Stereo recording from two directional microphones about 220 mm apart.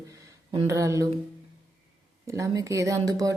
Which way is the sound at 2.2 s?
15° right (ahead or behind).